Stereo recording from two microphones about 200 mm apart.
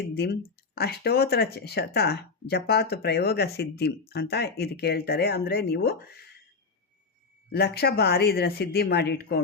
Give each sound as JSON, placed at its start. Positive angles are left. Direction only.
{"t": 0.1, "sound": "speech", "side_deg": 55}
{"t": 7.5, "sound": "speech", "side_deg": 55}